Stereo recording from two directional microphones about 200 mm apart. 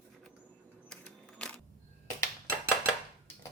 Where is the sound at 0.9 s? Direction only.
5° left (ahead or behind).